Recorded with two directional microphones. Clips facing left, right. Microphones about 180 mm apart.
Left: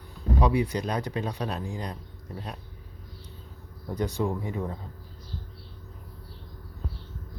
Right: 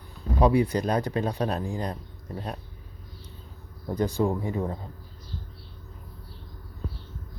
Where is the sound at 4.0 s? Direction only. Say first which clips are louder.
Right 3 dB; 30° right (ahead or behind).